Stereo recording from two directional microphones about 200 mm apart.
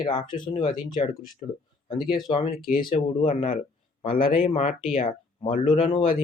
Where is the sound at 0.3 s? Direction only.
25° left (ahead or behind).